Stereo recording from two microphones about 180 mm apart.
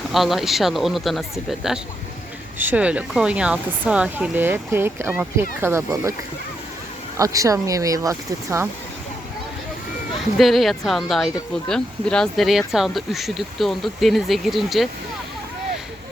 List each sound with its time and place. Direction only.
0.1 s speech: centre (ahead or behind)
7.2 s speech: 20° right (ahead or behind)
10.3 s speech: centre (ahead or behind)